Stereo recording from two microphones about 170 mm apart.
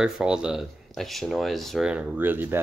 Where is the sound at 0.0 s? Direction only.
5° right (ahead or behind).